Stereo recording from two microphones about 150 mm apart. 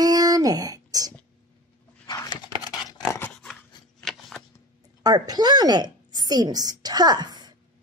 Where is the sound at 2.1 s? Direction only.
30° left (ahead or behind).